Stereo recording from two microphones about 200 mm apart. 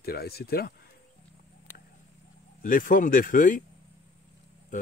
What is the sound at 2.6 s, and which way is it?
Speech, 45° left (ahead or behind).